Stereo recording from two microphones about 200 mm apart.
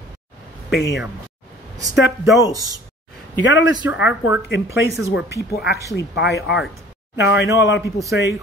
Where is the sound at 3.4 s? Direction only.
65° left (ahead or behind).